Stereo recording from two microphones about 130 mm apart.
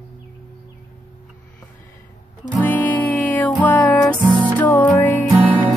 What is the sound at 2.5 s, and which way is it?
Music, 10° left (ahead or behind).